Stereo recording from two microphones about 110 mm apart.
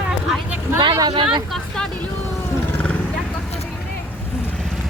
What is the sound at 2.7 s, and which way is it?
Wild animals, 15° left (ahead or behind).